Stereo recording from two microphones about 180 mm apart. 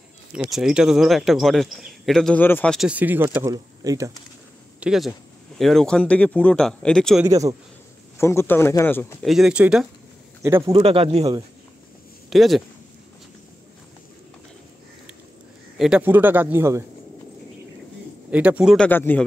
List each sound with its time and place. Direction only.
0.3 s speech: 5° right (ahead or behind)
2.9 s speech: 10° right (ahead or behind)
4.7 s speech: 5° right (ahead or behind)
7.2 s speech: 20° right (ahead or behind)
8.2 s speech: 15° left (ahead or behind)
9.2 s speech: centre (ahead or behind)
10.7 s speech: 30° right (ahead or behind)
12.3 s speech: centre (ahead or behind)
15.8 s speech: 10° right (ahead or behind)
18.3 s speech: 10° right (ahead or behind)
18.9 s speech: 10° left (ahead or behind)